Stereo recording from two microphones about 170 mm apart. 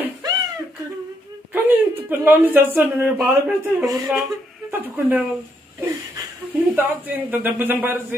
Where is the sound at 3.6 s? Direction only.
20° right (ahead or behind).